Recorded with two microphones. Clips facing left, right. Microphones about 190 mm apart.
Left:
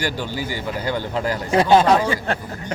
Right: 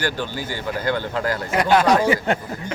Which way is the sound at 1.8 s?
15° right (ahead or behind).